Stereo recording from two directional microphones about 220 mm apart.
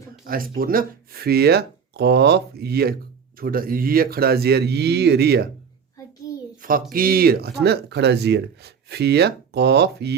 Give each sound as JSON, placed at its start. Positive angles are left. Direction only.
{"t": 0.3, "sound": "speech", "side_deg": -40}
{"t": 6.0, "sound": "child singing", "side_deg": 15}
{"t": 6.6, "sound": "speech", "side_deg": -40}